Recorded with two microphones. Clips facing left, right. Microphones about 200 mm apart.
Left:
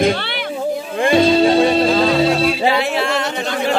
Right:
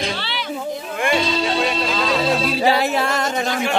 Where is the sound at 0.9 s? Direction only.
30° left (ahead or behind).